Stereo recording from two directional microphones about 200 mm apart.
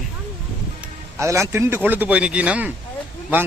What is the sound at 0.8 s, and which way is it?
A man's voice, 15° right (ahead or behind).